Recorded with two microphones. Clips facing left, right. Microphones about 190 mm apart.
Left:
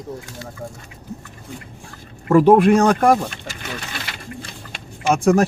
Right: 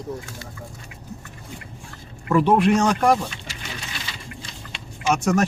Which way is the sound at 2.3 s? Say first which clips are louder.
Left 6 dB; 50° left (ahead or behind).